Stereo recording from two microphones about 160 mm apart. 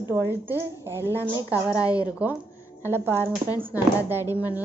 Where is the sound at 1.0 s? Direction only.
15° left (ahead or behind).